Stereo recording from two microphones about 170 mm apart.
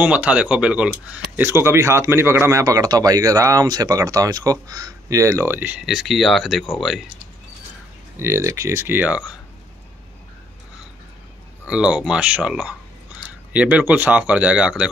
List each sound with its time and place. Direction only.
0.0 s speech: 10° right (ahead or behind)
8.2 s speech: 15° right (ahead or behind)
11.6 s speech: 5° right (ahead or behind)